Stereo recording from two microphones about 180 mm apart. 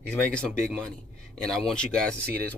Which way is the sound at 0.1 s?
5° left (ahead or behind).